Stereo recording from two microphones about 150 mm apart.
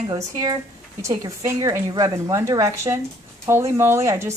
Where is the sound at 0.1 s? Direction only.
25° right (ahead or behind).